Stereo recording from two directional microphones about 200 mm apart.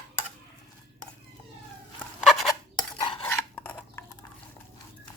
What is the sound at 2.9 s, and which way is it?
Stir, 25° left (ahead or behind).